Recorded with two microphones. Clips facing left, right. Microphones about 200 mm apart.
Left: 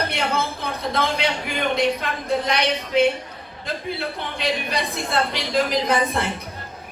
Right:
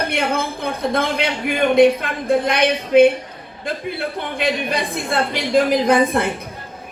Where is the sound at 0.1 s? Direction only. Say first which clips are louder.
Right 3 dB; 55° right (ahead or behind).